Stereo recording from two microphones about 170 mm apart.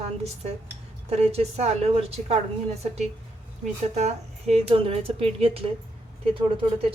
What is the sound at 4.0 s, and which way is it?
Speech, 40° right (ahead or behind).